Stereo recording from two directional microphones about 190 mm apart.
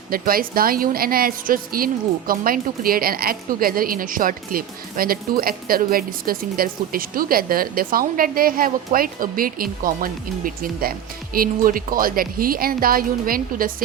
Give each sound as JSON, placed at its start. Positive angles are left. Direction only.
{"t": 0.1, "sound": "a woman's voice", "side_deg": -50}